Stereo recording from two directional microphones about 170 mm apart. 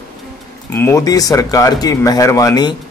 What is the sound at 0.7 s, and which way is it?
Speech, 15° left (ahead or behind).